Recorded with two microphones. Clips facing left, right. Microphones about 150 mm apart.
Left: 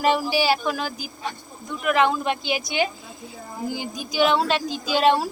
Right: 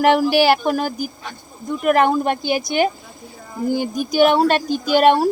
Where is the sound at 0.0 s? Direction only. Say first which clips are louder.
Right 6 dB; 65° right (ahead or behind).